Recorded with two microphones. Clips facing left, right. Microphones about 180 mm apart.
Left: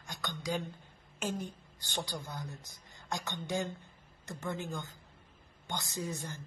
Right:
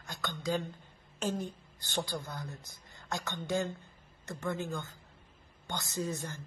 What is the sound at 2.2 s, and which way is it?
Speech, 15° left (ahead or behind).